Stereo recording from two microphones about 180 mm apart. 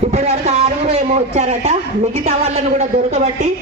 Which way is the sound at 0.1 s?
35° right (ahead or behind).